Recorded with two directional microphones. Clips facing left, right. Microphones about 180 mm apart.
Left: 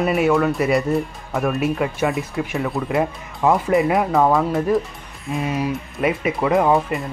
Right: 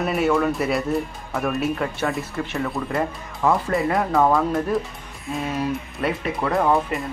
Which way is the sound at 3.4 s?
20° left (ahead or behind).